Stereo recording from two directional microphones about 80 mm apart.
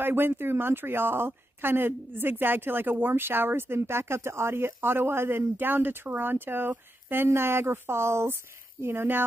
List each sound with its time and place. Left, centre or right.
0.0 s speech: right